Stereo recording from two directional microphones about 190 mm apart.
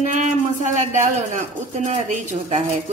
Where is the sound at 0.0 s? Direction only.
40° right (ahead or behind).